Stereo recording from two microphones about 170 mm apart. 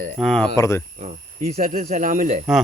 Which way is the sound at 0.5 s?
15° left (ahead or behind).